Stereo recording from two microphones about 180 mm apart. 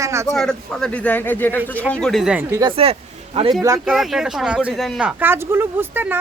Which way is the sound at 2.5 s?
25° right (ahead or behind).